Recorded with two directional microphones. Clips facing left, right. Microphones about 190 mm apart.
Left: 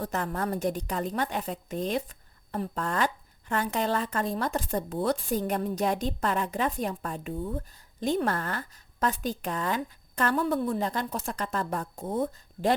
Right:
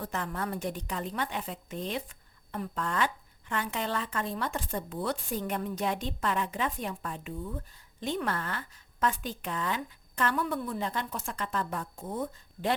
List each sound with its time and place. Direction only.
0.0 s a woman's voice: 40° left (ahead or behind)
12.0 s speech: 30° left (ahead or behind)